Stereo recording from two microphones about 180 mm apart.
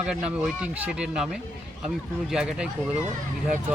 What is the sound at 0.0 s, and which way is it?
Speech, 5° right (ahead or behind).